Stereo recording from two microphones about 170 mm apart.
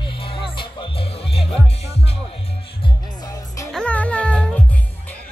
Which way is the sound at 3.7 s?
5° left (ahead or behind).